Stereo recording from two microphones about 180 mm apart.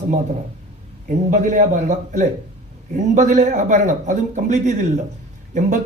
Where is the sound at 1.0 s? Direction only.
45° right (ahead or behind).